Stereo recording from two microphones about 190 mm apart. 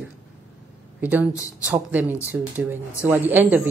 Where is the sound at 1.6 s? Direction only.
10° right (ahead or behind).